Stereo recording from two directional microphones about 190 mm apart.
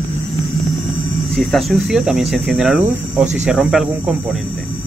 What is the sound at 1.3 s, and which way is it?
Speech, centre (ahead or behind).